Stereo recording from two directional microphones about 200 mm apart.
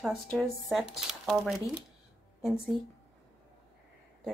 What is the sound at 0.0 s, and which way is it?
A woman's voice, centre (ahead or behind).